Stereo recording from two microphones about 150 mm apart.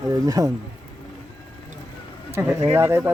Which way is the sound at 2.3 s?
15° right (ahead or behind).